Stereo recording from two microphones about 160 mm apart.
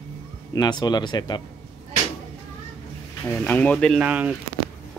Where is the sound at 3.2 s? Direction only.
10° left (ahead or behind).